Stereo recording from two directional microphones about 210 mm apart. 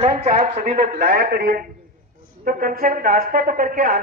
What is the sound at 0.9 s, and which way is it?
A man's voice, 45° right (ahead or behind).